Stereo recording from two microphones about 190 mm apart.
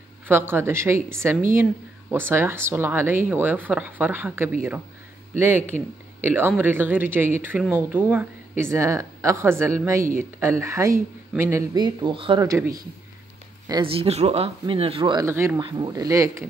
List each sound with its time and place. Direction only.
0.3 s speech: 10° right (ahead or behind)
6.2 s speech: 10° right (ahead or behind)
13.7 s speech: 25° right (ahead or behind)
15.2 s speech: 15° right (ahead or behind)